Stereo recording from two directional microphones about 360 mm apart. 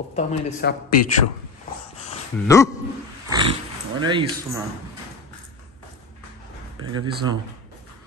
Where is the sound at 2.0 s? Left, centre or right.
Centre.